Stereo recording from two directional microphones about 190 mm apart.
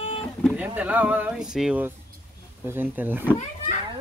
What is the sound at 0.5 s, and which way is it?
Speech, 10° right (ahead or behind).